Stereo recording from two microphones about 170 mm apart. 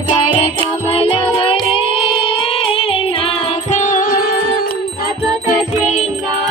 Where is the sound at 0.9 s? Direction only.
35° left (ahead or behind).